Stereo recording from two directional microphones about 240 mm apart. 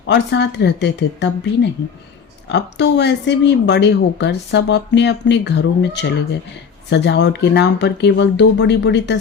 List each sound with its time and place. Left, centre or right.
0.1 s a woman's voice: left
2.5 s a woman's voice: left